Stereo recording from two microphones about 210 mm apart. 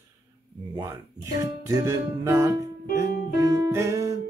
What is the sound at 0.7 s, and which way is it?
Speech, 15° right (ahead or behind).